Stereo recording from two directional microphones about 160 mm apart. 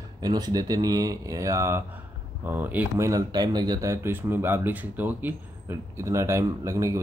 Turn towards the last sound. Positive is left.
turn(degrees=-20)  # may be behind; listen again after turning